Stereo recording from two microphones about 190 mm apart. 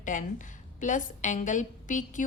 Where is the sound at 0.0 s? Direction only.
40° left (ahead or behind).